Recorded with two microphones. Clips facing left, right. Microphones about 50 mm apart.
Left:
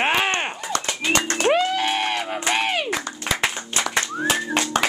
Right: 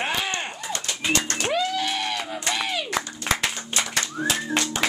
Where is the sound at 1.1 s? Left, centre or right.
Left.